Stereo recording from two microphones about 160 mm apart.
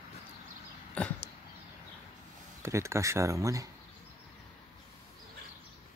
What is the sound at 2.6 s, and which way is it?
Speech, 15° right (ahead or behind).